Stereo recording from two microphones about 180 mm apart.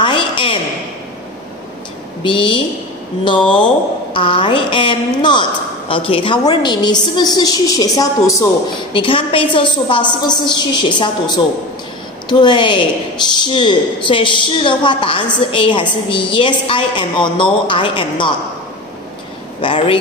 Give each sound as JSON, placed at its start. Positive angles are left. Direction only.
{"t": 0.0, "sound": "a sound", "side_deg": 25}
{"t": 2.2, "sound": "a woman's voice", "side_deg": 25}
{"t": 3.3, "sound": "speech", "side_deg": 5}
{"t": 4.1, "sound": "a woman's voice", "side_deg": 30}
{"t": 19.6, "sound": "a woman's voice", "side_deg": 30}